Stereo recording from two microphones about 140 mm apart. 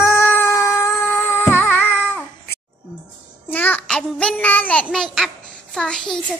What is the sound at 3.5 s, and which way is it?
Child singing, 10° left (ahead or behind).